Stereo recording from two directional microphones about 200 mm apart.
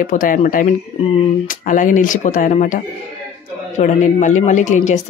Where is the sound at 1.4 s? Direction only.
40° left (ahead or behind).